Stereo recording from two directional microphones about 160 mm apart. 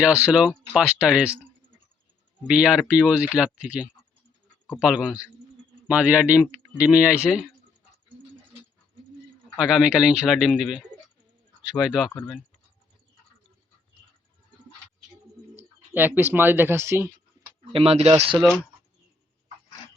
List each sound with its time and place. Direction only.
0.0 s speech: 5° right (ahead or behind)
2.5 s speech: 5° right (ahead or behind)
9.6 s speech: 5° right (ahead or behind)
12.1 s speech: 10° left (ahead or behind)
16.0 s speech: 10° right (ahead or behind)
17.7 s speech: 35° right (ahead or behind)
18.3 s speech: 5° left (ahead or behind)